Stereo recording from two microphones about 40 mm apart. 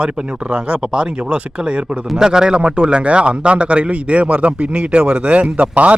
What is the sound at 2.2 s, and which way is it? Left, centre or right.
A man's voice, centre.